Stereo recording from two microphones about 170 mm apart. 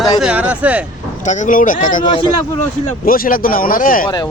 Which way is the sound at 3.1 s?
55° left (ahead or behind).